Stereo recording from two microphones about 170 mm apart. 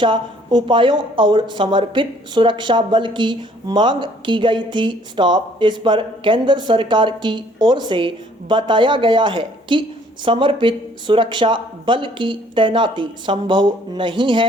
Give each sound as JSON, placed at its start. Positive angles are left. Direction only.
{"t": 0.0, "sound": "a woman's voice", "side_deg": -30}